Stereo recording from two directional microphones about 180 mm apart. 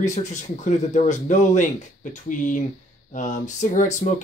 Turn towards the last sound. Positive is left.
turn(degrees=45)  # may be behind; listen again after turning